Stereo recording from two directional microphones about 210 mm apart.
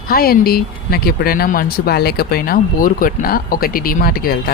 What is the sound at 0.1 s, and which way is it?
A woman's voice, 45° left (ahead or behind).